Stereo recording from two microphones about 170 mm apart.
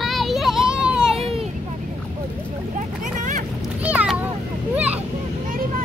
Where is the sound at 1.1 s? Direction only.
35° right (ahead or behind).